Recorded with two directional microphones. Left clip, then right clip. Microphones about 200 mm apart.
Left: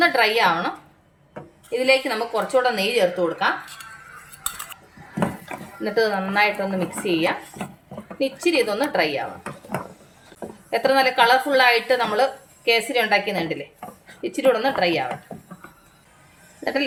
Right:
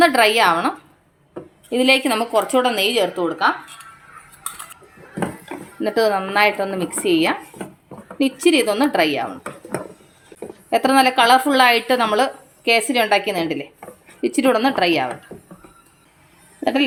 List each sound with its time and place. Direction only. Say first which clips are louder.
0.0 s a woman's voice: right 4 dB; 45° right (ahead or behind)
1.7 s speech: right 3 dB; 45° right (ahead or behind)
5.8 s a woman's voice: right 3 dB; 40° right (ahead or behind)
10.7 s speech: right 3 dB; 40° right (ahead or behind)
15.3 s a sound: even; 10° left (ahead or behind)